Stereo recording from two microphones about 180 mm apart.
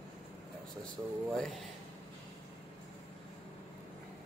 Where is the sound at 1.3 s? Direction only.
Centre (ahead or behind).